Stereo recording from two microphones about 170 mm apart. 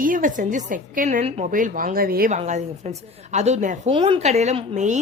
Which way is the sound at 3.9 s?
30° right (ahead or behind).